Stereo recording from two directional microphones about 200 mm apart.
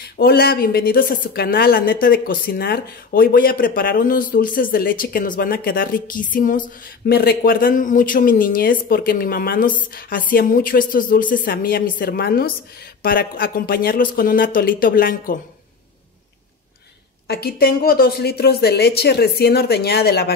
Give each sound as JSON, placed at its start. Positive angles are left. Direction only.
{"t": 0.0, "sound": "a woman's voice", "side_deg": 50}
{"t": 17.3, "sound": "a woman's voice", "side_deg": 50}